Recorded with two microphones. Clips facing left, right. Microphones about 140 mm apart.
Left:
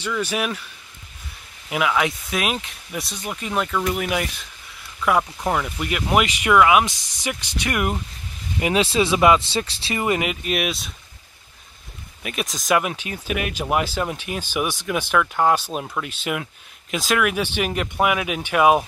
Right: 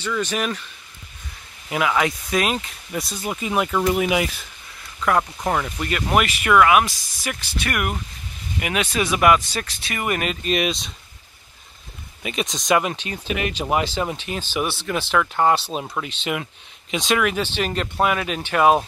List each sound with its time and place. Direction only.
0.0 s speech: 10° left (ahead or behind)
1.7 s speech: centre (ahead or behind)
5.0 s speech: 10° left (ahead or behind)
8.5 s speech: 30° left (ahead or behind)
10.4 s speech: 5° left (ahead or behind)
12.2 s speech: centre (ahead or behind)
15.1 s speech: centre (ahead or behind)
15.5 s speech: 10° left (ahead or behind)
15.8 s speech: 5° right (ahead or behind)
16.1 s speech: 10° left (ahead or behind)